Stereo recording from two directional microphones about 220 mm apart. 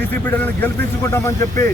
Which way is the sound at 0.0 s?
10° left (ahead or behind).